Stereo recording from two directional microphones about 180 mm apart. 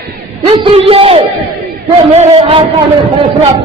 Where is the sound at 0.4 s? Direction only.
30° right (ahead or behind).